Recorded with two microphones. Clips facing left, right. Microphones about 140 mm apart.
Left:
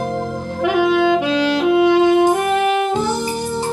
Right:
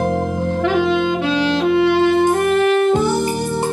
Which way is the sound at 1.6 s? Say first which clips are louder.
Left 2 dB; 15° left (ahead or behind).